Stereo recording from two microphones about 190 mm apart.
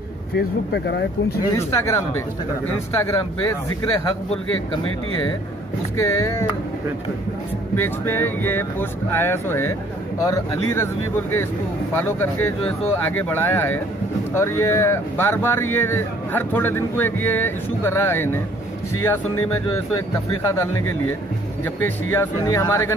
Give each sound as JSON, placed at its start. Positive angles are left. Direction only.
{"t": 0.4, "sound": "speech", "side_deg": 65}
{"t": 1.5, "sound": "speech", "side_deg": 15}
{"t": 5.9, "sound": "speech", "side_deg": 15}
{"t": 7.7, "sound": "speech", "side_deg": 10}
{"t": 11.9, "sound": "speech", "side_deg": 10}